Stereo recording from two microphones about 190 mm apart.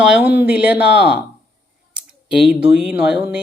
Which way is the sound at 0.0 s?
5° right (ahead or behind).